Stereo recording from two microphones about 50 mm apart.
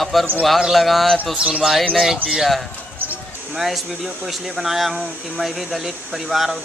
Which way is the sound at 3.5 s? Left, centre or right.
Centre.